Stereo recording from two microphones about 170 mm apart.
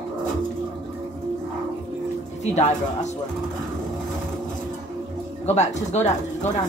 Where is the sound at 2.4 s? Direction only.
40° left (ahead or behind).